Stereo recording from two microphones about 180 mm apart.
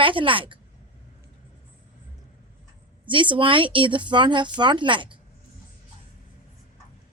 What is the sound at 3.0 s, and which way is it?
Speech, 25° right (ahead or behind).